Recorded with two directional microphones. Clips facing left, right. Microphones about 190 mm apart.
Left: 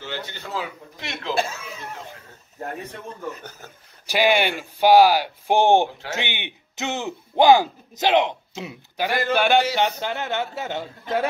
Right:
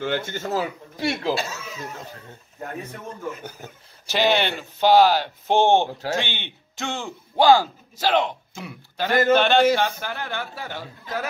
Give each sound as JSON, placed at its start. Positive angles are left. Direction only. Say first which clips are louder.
{"t": 0.0, "sound": "speech", "louder": "right 7 dB", "side_deg": -50}
{"t": 3.6, "sound": "speech", "louder": "right 3 dB", "side_deg": -20}
{"t": 4.0, "sound": "speech", "louder": "left 1 dB", "side_deg": 10}
{"t": 9.8, "sound": "a man's voice", "louder": "left 2 dB", "side_deg": 20}